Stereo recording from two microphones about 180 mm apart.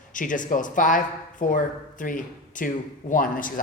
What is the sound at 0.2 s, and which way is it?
Speech, 45° left (ahead or behind).